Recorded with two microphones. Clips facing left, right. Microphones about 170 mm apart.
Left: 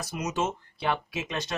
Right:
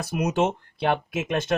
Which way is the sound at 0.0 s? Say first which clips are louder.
Right 6 dB; 60° right (ahead or behind).